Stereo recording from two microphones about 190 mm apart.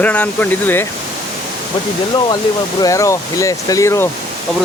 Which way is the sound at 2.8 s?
15° left (ahead or behind).